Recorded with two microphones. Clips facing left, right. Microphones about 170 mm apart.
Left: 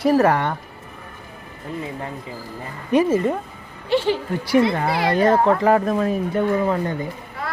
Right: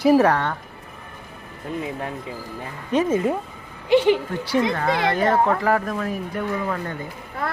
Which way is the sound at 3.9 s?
15° right (ahead or behind).